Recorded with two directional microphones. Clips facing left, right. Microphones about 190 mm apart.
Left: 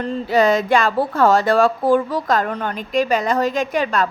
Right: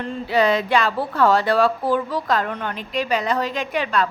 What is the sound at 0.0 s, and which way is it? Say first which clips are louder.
Speech: left 3 dB; 45° left (ahead or behind).